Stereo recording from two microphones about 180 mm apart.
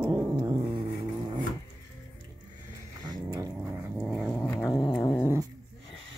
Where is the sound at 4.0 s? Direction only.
10° right (ahead or behind).